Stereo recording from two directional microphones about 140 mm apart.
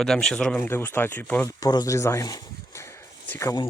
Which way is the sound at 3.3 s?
20° left (ahead or behind).